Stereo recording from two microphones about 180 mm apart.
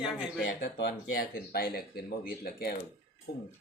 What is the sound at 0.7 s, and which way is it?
Speech, 65° left (ahead or behind).